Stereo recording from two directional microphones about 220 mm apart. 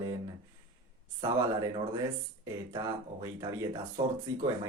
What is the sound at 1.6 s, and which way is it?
Speech, 15° right (ahead or behind).